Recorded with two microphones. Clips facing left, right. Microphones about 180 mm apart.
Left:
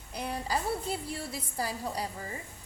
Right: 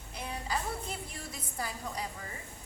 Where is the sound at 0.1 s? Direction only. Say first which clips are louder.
Left 4 dB; 35° left (ahead or behind).